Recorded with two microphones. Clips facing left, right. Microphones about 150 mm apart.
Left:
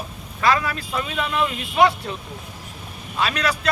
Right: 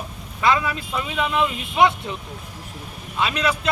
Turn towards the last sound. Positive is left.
turn(degrees=-20)  # may be behind; listen again after turning